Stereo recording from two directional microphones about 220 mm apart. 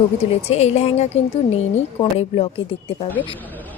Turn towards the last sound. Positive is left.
turn(degrees=25)  # may be behind; listen again after turning